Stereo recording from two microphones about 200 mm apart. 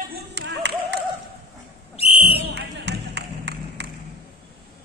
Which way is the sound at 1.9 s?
30° left (ahead or behind).